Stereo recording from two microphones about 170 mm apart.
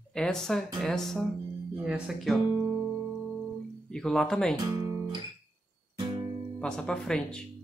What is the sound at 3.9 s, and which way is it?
Speech, 5° left (ahead or behind).